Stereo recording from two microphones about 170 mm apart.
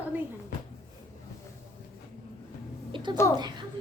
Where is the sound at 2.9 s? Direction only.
25° right (ahead or behind).